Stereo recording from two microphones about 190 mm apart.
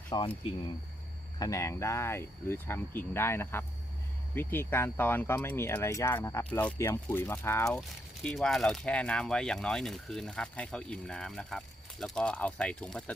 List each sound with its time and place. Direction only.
0.1 s speech: 20° left (ahead or behind)
1.4 s speech: 15° left (ahead or behind)